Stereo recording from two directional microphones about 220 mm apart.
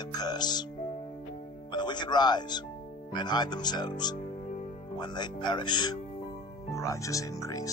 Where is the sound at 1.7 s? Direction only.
20° left (ahead or behind).